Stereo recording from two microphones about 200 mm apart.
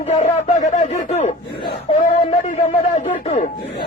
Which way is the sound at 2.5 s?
40° left (ahead or behind).